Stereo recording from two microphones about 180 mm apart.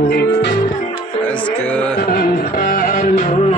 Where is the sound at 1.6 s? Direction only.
5° left (ahead or behind).